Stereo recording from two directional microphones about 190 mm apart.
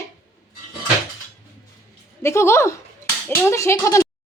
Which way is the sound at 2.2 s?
15° left (ahead or behind).